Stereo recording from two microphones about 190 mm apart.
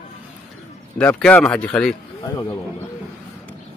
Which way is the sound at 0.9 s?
5° left (ahead or behind).